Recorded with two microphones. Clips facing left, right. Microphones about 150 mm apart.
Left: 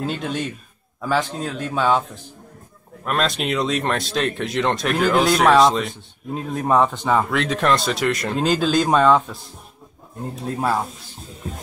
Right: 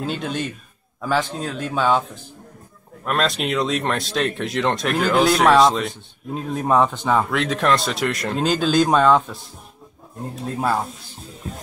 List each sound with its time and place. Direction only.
0.0 s speech: centre (ahead or behind)
3.1 s speech: centre (ahead or behind)